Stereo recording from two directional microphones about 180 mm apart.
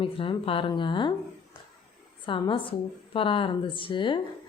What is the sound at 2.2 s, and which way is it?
Speech, 25° left (ahead or behind).